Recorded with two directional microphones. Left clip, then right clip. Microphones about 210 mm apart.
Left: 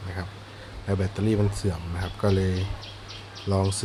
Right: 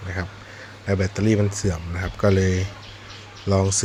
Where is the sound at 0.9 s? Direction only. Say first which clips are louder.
Right 5 dB; 10° right (ahead or behind).